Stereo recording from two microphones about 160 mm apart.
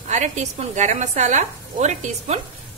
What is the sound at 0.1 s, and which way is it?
A woman's voice, 50° right (ahead or behind).